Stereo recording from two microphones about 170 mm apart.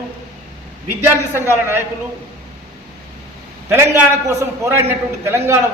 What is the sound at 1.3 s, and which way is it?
Speech, 15° right (ahead or behind).